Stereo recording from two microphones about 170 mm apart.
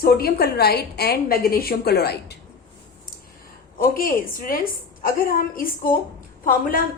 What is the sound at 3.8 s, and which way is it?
A woman's voice, 55° left (ahead or behind).